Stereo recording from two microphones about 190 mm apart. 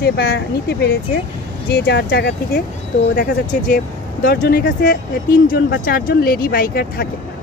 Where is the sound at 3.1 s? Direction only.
50° left (ahead or behind).